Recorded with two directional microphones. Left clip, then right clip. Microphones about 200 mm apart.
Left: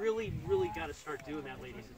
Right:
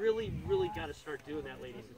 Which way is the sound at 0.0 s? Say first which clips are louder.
Right 2 dB; 25° left (ahead or behind).